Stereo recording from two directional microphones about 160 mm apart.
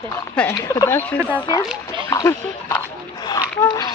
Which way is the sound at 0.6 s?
20° left (ahead or behind).